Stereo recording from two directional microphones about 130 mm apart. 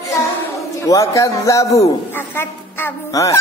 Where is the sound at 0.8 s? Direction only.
25° left (ahead or behind).